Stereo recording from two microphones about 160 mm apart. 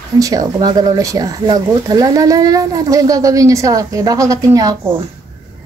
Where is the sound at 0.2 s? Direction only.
25° right (ahead or behind).